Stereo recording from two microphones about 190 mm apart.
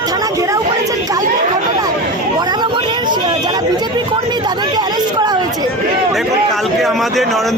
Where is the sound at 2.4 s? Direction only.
20° right (ahead or behind).